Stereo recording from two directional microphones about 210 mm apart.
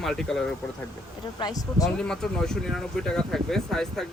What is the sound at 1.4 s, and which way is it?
Speech, 20° left (ahead or behind).